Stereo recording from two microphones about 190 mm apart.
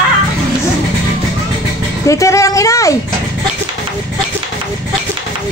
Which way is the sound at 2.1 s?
15° left (ahead or behind).